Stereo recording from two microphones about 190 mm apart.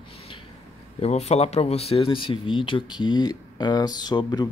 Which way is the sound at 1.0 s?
35° left (ahead or behind).